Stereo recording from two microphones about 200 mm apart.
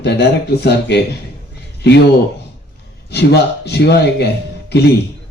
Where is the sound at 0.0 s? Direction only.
55° left (ahead or behind).